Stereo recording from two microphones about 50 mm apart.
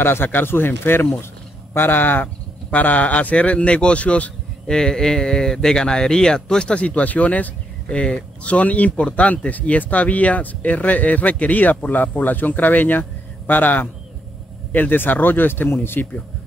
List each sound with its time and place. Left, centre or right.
0.0 s speech: left
4.6 s speech: centre; by 7.5 s left
7.9 s speech: left